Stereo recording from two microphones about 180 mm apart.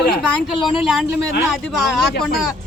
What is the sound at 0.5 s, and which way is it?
Speech, 25° left (ahead or behind).